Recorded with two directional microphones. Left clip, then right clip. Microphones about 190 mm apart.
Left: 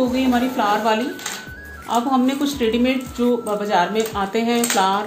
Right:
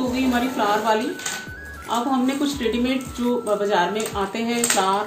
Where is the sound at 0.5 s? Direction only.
45° left (ahead or behind).